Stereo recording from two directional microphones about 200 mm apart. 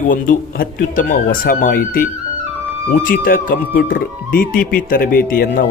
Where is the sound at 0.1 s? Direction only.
45° left (ahead or behind).